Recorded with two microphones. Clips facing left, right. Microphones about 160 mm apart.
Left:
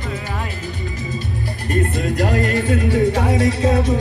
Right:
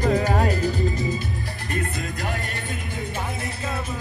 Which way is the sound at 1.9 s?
75° left (ahead or behind).